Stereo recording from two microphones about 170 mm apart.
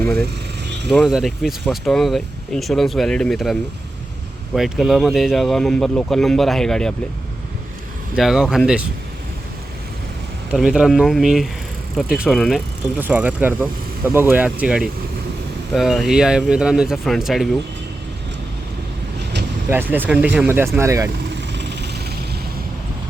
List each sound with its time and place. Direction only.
0.9 s speech: centre (ahead or behind)
8.1 s speech: 5° right (ahead or behind)
10.5 s speech: 5° right (ahead or behind)
19.7 s speech: 10° right (ahead or behind)
21.4 s vehicle: 90° right